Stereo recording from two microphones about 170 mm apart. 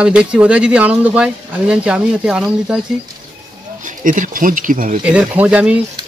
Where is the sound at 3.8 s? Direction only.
50° right (ahead or behind).